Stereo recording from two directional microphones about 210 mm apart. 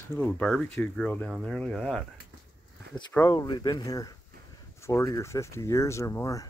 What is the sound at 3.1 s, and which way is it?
Speech, 15° left (ahead or behind).